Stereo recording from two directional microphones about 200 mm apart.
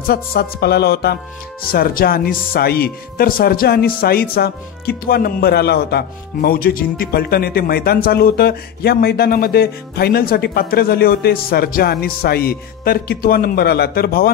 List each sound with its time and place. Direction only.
0.0 s speech: 50° left (ahead or behind)